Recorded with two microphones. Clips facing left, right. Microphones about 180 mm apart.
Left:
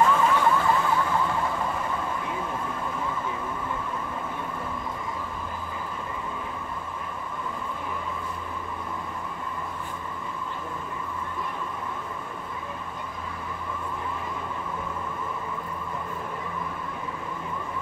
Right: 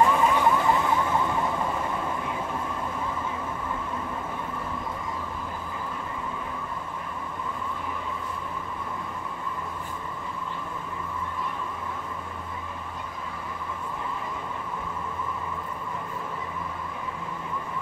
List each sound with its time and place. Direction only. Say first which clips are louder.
0.0 s vehicle: even; 15° right (ahead or behind)